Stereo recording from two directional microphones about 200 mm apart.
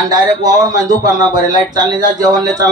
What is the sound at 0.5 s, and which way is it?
Speech, 20° right (ahead or behind).